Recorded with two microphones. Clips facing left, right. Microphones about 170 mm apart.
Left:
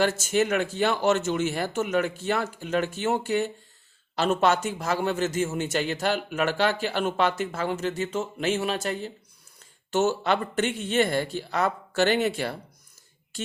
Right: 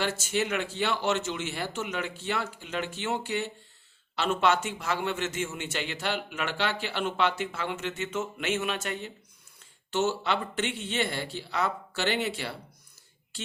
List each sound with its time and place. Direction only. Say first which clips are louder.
0.0 s a man's voice: left 6 dB; 45° left (ahead or behind)